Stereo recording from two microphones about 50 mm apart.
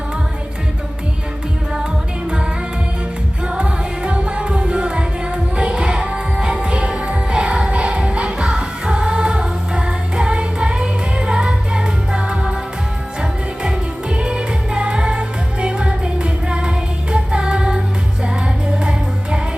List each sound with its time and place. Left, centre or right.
3.4 s music: right
13.6 s music: centre